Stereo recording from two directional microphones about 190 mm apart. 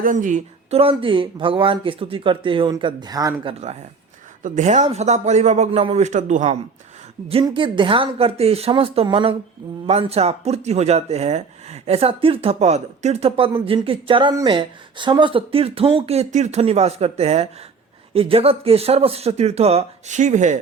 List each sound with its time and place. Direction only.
0.0 s speech: 45° right (ahead or behind); by 3.3 s 20° right (ahead or behind)
3.4 s speech: 35° right (ahead or behind)
7.3 s speech: 30° right (ahead or behind)